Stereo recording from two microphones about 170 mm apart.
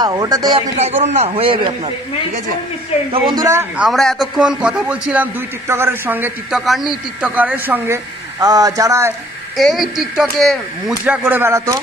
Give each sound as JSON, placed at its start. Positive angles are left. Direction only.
{"t": 0.0, "sound": "speech", "side_deg": -25}
{"t": 1.0, "sound": "a man's voice", "side_deg": -40}
{"t": 3.1, "sound": "speech", "side_deg": -25}
{"t": 3.7, "sound": "a man's voice", "side_deg": 0}
{"t": 6.6, "sound": "a man's voice", "side_deg": 0}
{"t": 9.6, "sound": "speech", "side_deg": 0}
{"t": 11.1, "sound": "a man's voice", "side_deg": -10}